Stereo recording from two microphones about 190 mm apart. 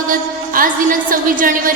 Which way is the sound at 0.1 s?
45° right (ahead or behind).